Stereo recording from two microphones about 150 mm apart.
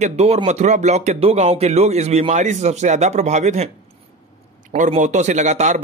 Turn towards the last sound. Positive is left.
turn(degrees=-50)  # may be behind; listen again after turning